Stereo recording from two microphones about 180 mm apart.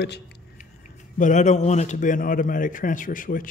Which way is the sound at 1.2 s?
45° left (ahead or behind).